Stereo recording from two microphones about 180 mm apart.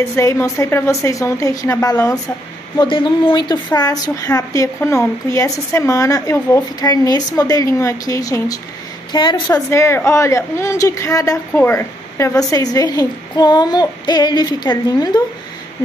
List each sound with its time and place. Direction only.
0.1 s a woman's voice: 15° left (ahead or behind)